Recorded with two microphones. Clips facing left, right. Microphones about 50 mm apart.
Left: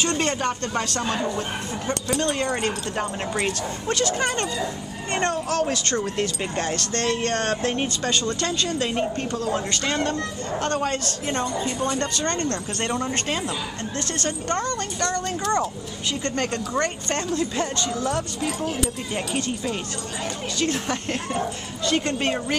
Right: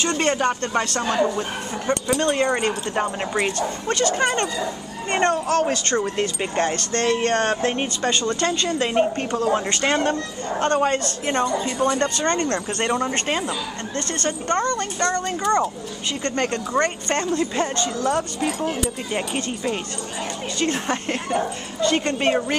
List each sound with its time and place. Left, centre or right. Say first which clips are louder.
0.1 s a woman's voice: right 3 dB; centre
3.5 s a woman's voice: right 2 dB; centre; by 10.1 s right
10.8 s speech: right 5 dB; centre
11.2 s a woman's voice: right 3 dB; right
12.2 s a woman's voice: right 4 dB; centre
13.9 s speech: right 3 dB; centre